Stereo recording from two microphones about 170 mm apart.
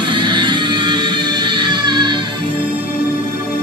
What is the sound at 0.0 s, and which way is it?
Music, 30° right (ahead or behind).